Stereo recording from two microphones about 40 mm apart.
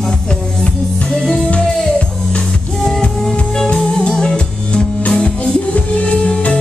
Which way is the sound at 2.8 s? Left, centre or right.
Centre.